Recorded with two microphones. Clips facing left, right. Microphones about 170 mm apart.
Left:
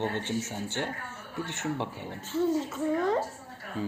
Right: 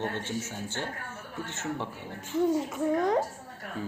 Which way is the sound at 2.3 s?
15° right (ahead or behind).